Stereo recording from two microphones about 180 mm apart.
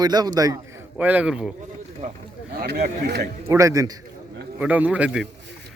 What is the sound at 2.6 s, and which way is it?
Speech, 60° right (ahead or behind).